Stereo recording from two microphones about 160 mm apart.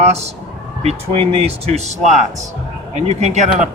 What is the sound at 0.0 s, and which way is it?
A man's voice, 40° right (ahead or behind).